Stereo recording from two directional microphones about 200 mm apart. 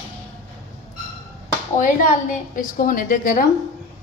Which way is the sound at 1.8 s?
40° left (ahead or behind).